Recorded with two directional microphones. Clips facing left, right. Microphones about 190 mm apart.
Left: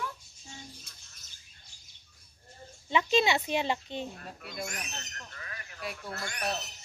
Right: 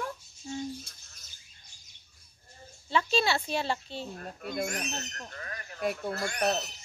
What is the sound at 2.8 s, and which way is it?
Speech, 15° left (ahead or behind).